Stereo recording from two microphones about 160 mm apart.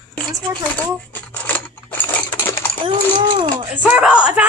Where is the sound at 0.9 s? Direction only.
10° left (ahead or behind).